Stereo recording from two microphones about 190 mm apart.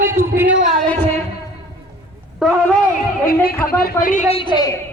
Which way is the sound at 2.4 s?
Centre (ahead or behind).